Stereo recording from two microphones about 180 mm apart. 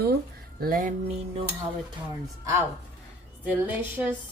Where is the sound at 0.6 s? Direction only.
50° right (ahead or behind).